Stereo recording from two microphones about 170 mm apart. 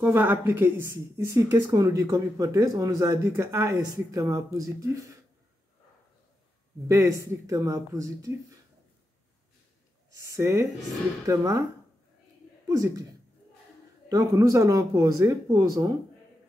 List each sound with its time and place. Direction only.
0.1 s a woman's voice: 10° right (ahead or behind)
6.9 s a woman's voice: 15° right (ahead or behind)
10.1 s a woman's voice: 15° right (ahead or behind)
12.6 s speech: 20° right (ahead or behind)
14.0 s a woman's voice: 20° right (ahead or behind)